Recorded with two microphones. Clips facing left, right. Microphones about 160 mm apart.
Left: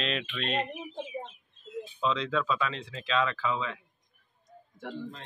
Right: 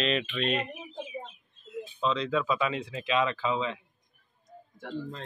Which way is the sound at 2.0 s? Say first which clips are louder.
Right 1 dB; centre (ahead or behind).